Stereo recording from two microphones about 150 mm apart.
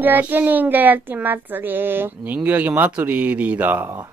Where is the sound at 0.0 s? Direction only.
10° right (ahead or behind).